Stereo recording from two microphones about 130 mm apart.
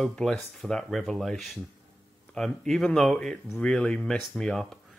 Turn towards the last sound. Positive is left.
turn(degrees=5)  # may be behind; listen again after turning